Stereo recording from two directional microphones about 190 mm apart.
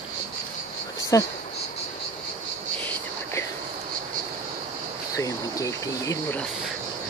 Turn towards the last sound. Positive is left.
turn(degrees=15)  # may be behind; listen again after turning